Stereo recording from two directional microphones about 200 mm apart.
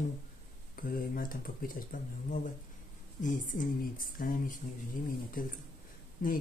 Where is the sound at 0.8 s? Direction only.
45° left (ahead or behind).